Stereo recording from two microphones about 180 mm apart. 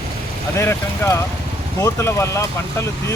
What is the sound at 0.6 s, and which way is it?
Speech, 15° left (ahead or behind).